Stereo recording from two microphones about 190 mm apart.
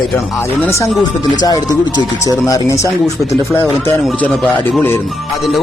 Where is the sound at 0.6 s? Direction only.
15° left (ahead or behind).